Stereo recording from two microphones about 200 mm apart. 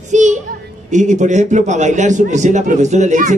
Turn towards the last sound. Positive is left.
turn(degrees=-35)  # may be behind; listen again after turning